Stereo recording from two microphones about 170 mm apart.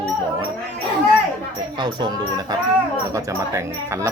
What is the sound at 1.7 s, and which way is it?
Speech, 25° right (ahead or behind).